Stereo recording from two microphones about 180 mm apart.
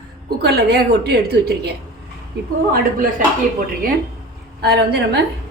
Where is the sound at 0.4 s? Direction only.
65° right (ahead or behind).